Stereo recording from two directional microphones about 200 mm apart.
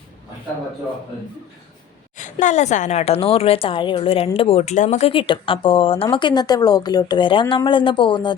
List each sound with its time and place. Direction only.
2.1 s speech: 40° left (ahead or behind); by 8.4 s 25° left (ahead or behind)